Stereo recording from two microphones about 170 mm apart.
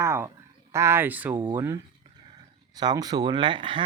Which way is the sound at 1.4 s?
20° right (ahead or behind).